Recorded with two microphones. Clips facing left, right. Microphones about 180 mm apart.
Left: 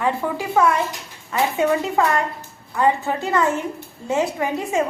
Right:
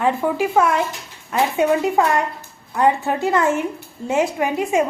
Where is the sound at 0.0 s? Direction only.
20° right (ahead or behind).